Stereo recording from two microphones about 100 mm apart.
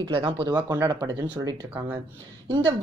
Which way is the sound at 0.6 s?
40° right (ahead or behind).